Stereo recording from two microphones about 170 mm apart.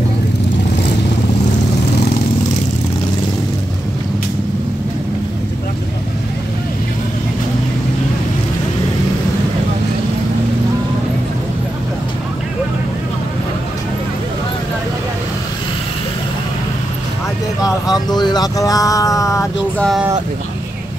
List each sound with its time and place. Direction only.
18.1 s vehicle: 25° left (ahead or behind)
19.8 s speech: centre (ahead or behind)